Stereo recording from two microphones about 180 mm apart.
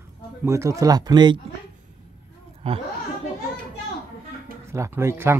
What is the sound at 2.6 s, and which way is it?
Speech, 30° right (ahead or behind).